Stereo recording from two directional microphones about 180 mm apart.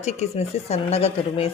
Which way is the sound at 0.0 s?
40° left (ahead or behind).